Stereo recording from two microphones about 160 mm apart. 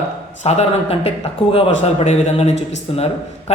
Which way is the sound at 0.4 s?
40° left (ahead or behind).